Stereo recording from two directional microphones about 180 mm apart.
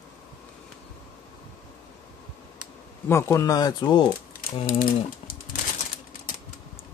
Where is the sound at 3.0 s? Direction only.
15° left (ahead or behind).